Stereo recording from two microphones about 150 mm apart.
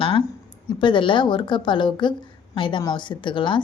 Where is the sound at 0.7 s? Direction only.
30° left (ahead or behind).